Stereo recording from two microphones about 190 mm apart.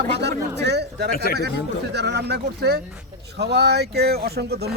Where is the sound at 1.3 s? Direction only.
55° left (ahead or behind).